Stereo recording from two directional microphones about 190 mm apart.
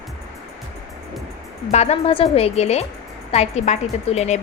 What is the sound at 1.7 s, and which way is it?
A woman's voice, 35° left (ahead or behind).